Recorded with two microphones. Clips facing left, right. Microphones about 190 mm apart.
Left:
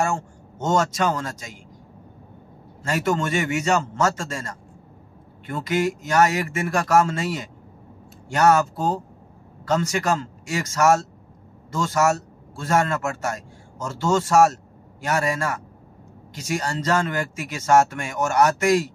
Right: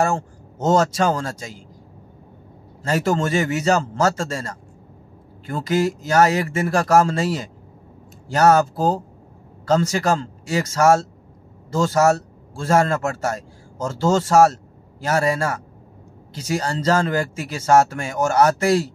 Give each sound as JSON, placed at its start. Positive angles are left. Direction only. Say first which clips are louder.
{"t": 0.0, "sound": "speech", "louder": "right 3 dB", "side_deg": -35}
{"t": 2.8, "sound": "a man's voice", "louder": "right 3 dB", "side_deg": -35}